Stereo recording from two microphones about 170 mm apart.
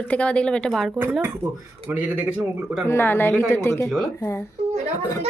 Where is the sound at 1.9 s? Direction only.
10° right (ahead or behind).